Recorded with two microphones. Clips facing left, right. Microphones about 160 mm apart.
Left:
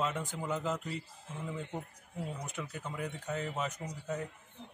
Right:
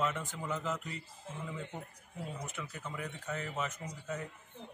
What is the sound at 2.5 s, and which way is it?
Speech, 30° left (ahead or behind).